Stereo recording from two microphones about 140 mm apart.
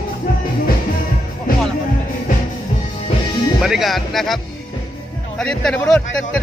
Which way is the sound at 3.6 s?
Centre (ahead or behind).